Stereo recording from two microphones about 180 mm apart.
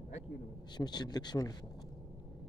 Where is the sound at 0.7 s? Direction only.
25° left (ahead or behind).